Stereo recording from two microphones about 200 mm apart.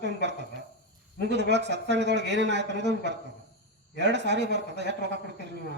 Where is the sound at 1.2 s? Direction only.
60° right (ahead or behind).